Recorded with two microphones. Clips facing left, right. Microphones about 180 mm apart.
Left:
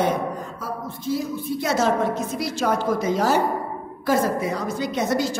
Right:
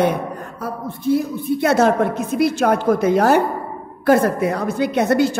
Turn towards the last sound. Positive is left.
turn(degrees=-60)  # may be behind; listen again after turning